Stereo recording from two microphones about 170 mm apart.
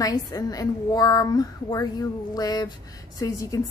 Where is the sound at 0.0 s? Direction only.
20° left (ahead or behind).